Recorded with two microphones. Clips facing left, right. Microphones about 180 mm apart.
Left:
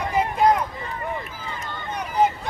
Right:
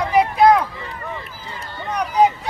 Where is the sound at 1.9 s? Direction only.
70° right (ahead or behind).